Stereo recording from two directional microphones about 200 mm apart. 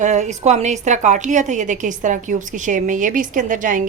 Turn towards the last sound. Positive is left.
turn(degrees=-40)  # may be behind; listen again after turning